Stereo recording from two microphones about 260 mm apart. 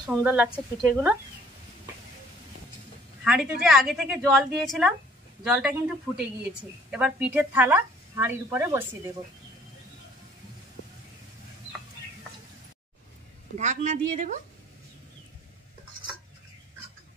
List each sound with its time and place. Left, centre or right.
0.1 s a woman's voice: centre
3.3 s a woman's voice: centre
6.9 s speech: centre
13.6 s a man's voice: right